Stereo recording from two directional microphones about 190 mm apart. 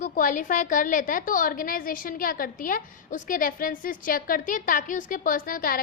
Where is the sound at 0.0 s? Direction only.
45° left (ahead or behind).